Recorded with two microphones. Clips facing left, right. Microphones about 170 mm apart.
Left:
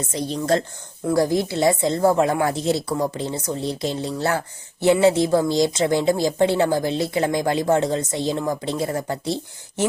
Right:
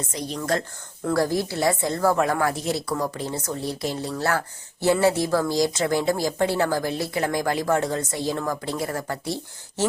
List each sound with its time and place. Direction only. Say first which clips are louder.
0.1 s speech: left 5 dB; 30° left (ahead or behind)